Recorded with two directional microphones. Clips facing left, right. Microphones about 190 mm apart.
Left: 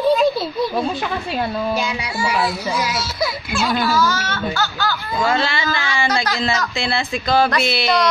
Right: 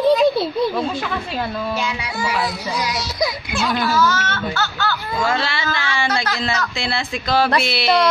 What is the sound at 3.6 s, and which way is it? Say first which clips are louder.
Speech: even; 10° left (ahead or behind).